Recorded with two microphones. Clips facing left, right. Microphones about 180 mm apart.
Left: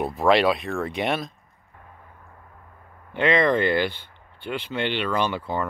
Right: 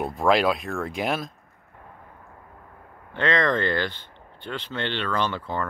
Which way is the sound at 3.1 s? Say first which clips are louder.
Left 3 dB; 10° left (ahead or behind).